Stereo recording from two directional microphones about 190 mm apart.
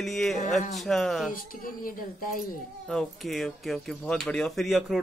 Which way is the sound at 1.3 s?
45° left (ahead or behind).